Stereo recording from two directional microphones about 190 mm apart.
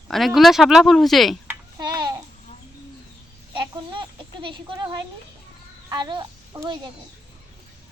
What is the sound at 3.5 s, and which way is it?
A child's voice, 25° right (ahead or behind).